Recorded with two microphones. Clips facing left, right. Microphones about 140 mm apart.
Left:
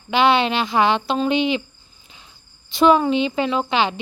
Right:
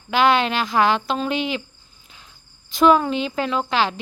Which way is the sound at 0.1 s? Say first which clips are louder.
Left 1 dB; centre (ahead or behind).